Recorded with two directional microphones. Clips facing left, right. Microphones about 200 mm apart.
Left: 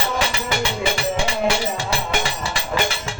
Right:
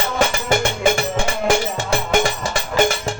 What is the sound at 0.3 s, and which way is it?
Music, 50° right (ahead or behind).